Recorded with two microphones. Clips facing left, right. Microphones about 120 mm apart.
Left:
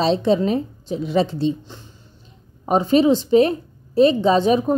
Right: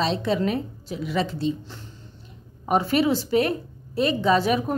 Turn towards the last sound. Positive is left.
turn(degrees=25)  # may be behind; listen again after turning